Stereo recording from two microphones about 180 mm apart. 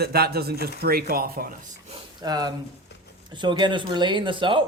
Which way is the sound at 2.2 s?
20° right (ahead or behind).